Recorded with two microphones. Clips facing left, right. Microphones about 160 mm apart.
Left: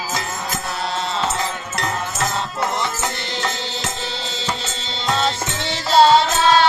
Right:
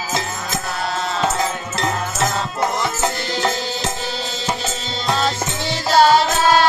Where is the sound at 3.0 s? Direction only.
25° right (ahead or behind).